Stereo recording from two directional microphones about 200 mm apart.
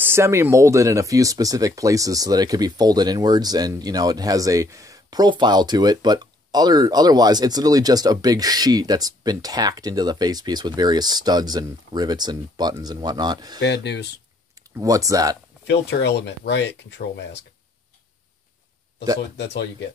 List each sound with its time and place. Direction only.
0.0 s speech: 10° right (ahead or behind)
13.6 s speech: 60° left (ahead or behind)
14.8 s speech: 15° right (ahead or behind)
15.6 s speech: 55° left (ahead or behind)
19.1 s speech: 55° left (ahead or behind)